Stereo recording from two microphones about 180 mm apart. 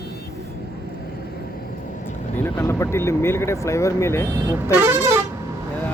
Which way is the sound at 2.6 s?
15° left (ahead or behind).